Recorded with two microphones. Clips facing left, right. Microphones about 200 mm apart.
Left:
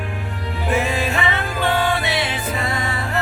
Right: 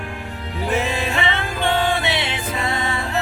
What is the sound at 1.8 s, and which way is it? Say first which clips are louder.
Music: even; 25° right (ahead or behind).